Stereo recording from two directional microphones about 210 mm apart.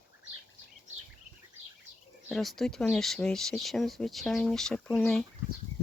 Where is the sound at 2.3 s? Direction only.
Centre (ahead or behind).